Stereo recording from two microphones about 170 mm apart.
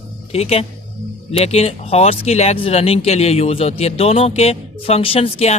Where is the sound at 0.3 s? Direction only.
35° left (ahead or behind).